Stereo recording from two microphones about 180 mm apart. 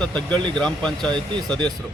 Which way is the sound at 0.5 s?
5° left (ahead or behind).